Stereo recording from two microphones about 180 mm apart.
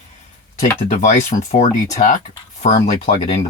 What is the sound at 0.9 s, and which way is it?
Speech, 40° left (ahead or behind).